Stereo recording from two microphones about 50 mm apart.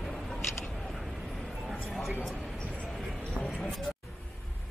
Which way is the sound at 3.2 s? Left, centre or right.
Centre.